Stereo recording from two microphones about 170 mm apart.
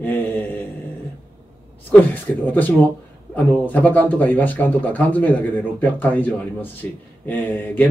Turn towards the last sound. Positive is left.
turn(degrees=10)  # may be behind; listen again after turning